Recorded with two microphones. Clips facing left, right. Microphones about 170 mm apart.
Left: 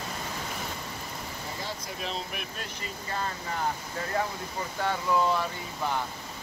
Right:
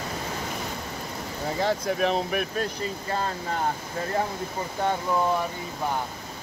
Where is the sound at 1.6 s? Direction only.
65° right (ahead or behind).